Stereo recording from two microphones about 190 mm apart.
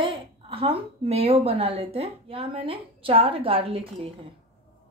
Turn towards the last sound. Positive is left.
turn(degrees=-30)  # may be behind; listen again after turning